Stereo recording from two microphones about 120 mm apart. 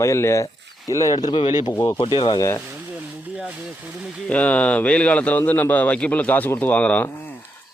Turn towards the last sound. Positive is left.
turn(degrees=10)  # may be behind; listen again after turning